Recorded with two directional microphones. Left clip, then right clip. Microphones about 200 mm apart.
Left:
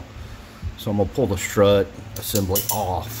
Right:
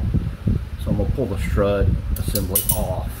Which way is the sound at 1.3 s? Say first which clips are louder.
Left 4 dB; 60° left (ahead or behind).